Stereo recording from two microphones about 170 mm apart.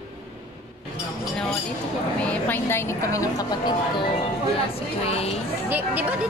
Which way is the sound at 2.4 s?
10° left (ahead or behind).